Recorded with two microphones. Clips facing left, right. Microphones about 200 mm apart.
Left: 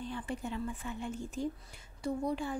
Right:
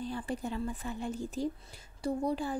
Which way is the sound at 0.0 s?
35° right (ahead or behind).